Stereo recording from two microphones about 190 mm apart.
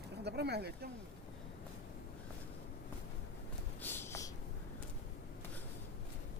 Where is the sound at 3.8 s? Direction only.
10° left (ahead or behind).